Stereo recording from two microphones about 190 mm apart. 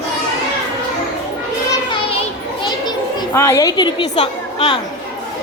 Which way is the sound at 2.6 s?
20° left (ahead or behind).